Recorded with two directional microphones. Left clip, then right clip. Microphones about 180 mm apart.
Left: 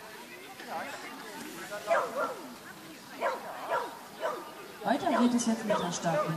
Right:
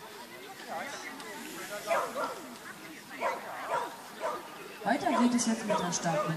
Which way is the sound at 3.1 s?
40° right (ahead or behind).